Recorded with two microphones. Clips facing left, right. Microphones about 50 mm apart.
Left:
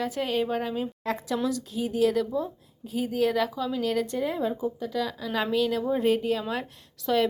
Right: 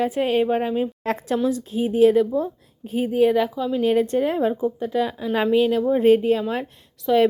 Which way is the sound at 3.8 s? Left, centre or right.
Right.